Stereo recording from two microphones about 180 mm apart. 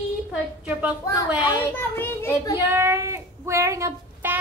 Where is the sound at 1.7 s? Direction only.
10° left (ahead or behind).